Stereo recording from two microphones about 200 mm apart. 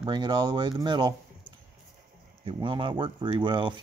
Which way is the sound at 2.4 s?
25° right (ahead or behind).